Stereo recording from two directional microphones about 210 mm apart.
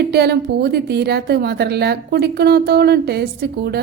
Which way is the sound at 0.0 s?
50° right (ahead or behind).